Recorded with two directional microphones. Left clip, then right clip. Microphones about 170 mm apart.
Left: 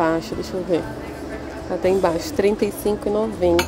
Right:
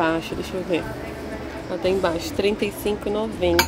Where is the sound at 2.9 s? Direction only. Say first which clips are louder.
Left 3 dB; 20° left (ahead or behind).